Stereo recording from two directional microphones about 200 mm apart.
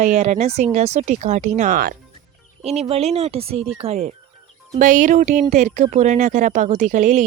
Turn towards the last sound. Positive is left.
turn(degrees=-40)  # may be behind; listen again after turning